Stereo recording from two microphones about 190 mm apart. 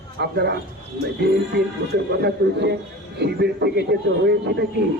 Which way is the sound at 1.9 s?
60° right (ahead or behind).